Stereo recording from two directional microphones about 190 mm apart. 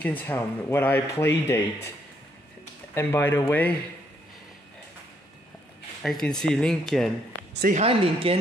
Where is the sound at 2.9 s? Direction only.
15° left (ahead or behind).